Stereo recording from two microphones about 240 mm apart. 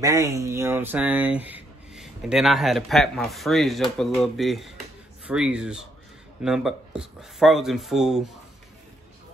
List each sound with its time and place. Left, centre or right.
0.0 s speech: centre